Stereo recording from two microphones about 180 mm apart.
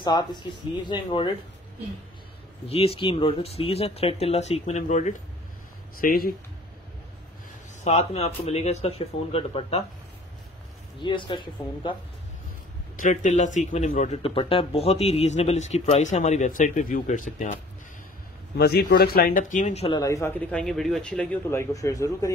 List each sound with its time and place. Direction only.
0.0 s speech: 25° left (ahead or behind)
2.7 s speech: 35° left (ahead or behind)
5.9 s speech: 55° left (ahead or behind)
7.8 s speech: 35° left (ahead or behind)
11.0 s speech: 25° left (ahead or behind)
12.9 s speech: 45° left (ahead or behind)
18.6 s speech: 65° left (ahead or behind); by 20.0 s 35° left (ahead or behind)
20.0 s speech: 15° left (ahead or behind)